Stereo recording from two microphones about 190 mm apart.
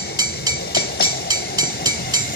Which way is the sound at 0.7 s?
55° left (ahead or behind).